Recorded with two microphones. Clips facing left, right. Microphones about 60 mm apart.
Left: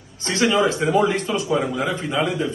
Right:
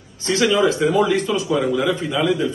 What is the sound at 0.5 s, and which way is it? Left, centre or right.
A man's voice, left.